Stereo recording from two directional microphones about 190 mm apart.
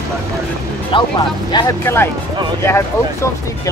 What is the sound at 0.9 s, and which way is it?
Speech, 25° left (ahead or behind).